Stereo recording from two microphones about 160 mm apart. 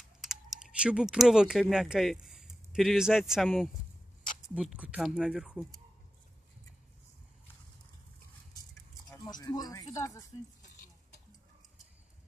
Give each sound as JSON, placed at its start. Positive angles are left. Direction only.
{"t": 0.2, "sound": "speech", "side_deg": 0}
{"t": 9.1, "sound": "speech", "side_deg": 20}